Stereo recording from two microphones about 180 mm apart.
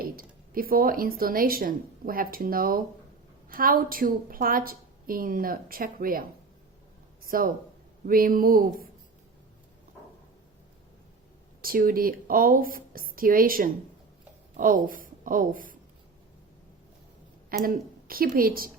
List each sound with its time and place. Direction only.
0.0 s speech: 55° right (ahead or behind)
7.3 s speech: 50° right (ahead or behind)
11.6 s a woman's voice: 50° right (ahead or behind)
17.7 s speech: 55° right (ahead or behind)